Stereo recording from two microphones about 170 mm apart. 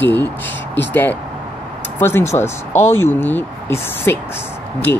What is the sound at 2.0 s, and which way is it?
Speech, 15° left (ahead or behind).